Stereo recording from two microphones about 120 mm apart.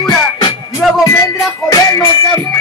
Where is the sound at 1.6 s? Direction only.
25° left (ahead or behind).